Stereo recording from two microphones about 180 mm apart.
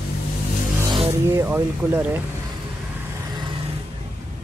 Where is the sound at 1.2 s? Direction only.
15° right (ahead or behind).